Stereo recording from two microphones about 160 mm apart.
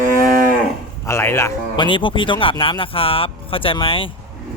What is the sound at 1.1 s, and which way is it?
Speech, 15° left (ahead or behind).